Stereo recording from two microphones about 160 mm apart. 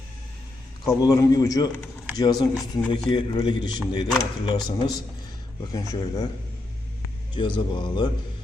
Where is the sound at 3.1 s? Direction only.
30° left (ahead or behind).